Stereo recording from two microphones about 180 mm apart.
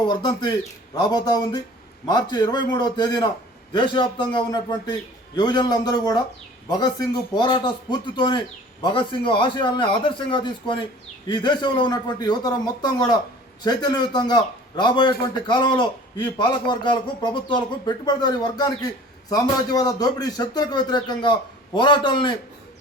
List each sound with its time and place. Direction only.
0.0 s speech: 25° left (ahead or behind)